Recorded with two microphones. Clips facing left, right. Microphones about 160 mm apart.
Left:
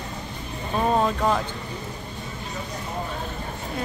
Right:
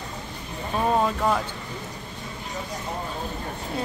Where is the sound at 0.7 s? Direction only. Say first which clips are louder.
Left 1 dB; centre (ahead or behind).